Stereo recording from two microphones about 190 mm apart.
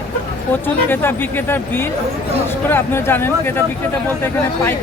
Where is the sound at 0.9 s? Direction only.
10° left (ahead or behind).